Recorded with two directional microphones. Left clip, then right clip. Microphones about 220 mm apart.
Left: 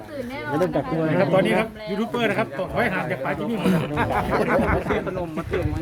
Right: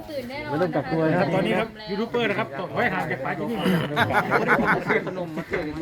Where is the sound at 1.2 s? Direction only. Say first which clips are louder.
Left 4 dB; 50° left (ahead or behind).